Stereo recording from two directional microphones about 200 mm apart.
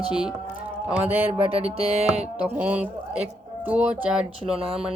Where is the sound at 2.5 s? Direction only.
5° right (ahead or behind).